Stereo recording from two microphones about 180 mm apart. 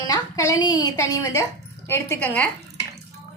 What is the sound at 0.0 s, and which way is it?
A woman's voice, 20° left (ahead or behind).